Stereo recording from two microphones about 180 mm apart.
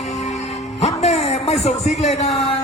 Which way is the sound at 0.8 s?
35° left (ahead or behind).